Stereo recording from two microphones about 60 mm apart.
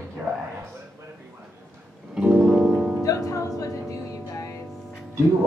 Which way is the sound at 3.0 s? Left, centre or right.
Left.